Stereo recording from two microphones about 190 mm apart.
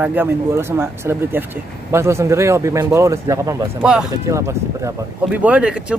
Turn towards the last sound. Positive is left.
turn(degrees=-5)  # may be behind; listen again after turning